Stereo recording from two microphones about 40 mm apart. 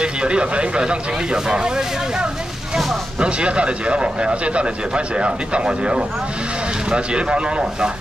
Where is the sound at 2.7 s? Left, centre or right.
Centre.